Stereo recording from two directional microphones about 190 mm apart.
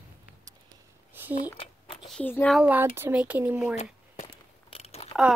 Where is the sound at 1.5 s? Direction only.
30° left (ahead or behind).